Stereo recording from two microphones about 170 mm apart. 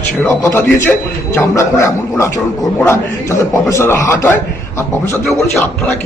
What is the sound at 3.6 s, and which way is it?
A man's voice, 15° left (ahead or behind).